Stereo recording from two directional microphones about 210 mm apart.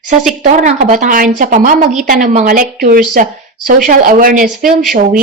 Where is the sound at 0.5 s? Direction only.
35° right (ahead or behind).